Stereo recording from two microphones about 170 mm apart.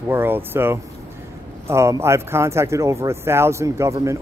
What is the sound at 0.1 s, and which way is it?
Speech, 15° right (ahead or behind).